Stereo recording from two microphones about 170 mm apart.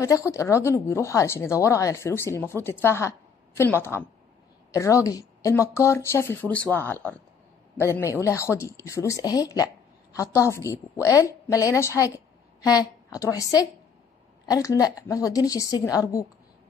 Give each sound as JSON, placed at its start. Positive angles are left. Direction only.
{"t": 0.0, "sound": "a woman's voice", "side_deg": 20}